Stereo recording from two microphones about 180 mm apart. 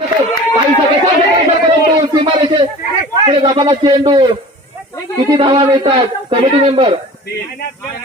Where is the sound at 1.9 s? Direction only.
25° right (ahead or behind).